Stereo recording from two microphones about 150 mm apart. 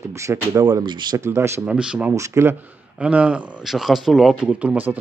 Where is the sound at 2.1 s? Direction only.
20° right (ahead or behind).